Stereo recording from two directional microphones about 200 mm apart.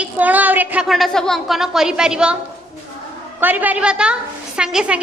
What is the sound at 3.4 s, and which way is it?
A woman's voice, 10° right (ahead or behind).